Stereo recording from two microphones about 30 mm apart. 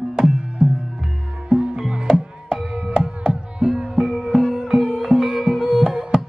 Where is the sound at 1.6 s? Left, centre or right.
Right.